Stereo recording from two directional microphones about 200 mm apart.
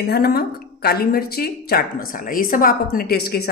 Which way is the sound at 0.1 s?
50° left (ahead or behind).